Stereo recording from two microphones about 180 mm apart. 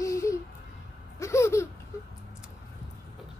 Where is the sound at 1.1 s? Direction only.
15° left (ahead or behind).